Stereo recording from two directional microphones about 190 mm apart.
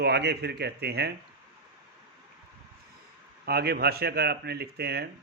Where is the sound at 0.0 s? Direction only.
60° right (ahead or behind).